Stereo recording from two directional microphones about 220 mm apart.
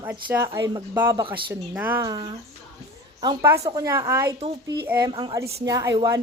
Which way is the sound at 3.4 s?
15° right (ahead or behind).